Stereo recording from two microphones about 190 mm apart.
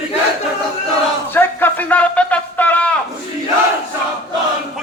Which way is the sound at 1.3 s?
10° left (ahead or behind).